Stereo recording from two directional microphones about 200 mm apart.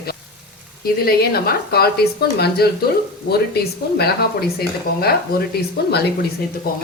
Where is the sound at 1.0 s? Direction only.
50° left (ahead or behind).